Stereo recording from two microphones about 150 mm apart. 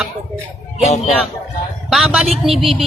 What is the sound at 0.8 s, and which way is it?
Speech, 50° left (ahead or behind).